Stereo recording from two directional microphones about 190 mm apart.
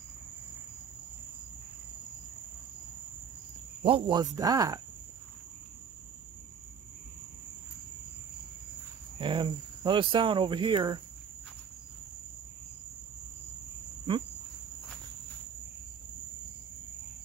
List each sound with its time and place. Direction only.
3.8 s speech: 25° right (ahead or behind)
9.2 s speech: 25° right (ahead or behind)